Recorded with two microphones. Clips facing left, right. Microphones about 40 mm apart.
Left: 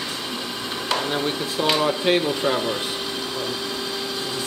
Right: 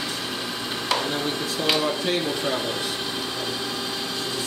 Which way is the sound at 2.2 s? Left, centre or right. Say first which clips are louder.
Left 3 dB; centre.